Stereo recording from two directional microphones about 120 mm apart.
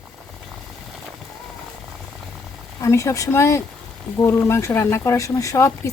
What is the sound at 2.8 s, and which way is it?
Speech, 25° left (ahead or behind).